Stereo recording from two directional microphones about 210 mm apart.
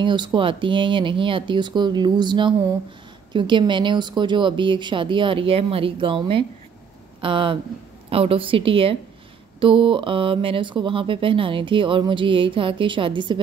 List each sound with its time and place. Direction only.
0.0 s speech: 20° right (ahead or behind)